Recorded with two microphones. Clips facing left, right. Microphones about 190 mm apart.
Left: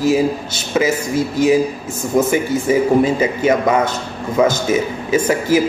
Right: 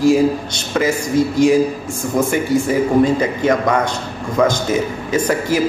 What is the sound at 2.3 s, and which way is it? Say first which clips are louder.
Speech: even; 5° left (ahead or behind).